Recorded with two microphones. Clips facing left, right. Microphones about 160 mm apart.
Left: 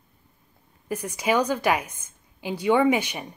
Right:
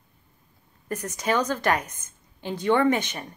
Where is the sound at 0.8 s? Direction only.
10° left (ahead or behind).